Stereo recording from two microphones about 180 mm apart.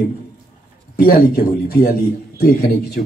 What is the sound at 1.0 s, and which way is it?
A man's voice, 55° left (ahead or behind).